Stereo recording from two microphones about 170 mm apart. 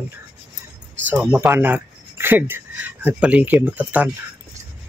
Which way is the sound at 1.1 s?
10° right (ahead or behind).